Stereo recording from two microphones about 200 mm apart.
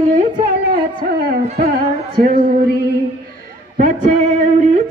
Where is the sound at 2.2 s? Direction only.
45° right (ahead or behind).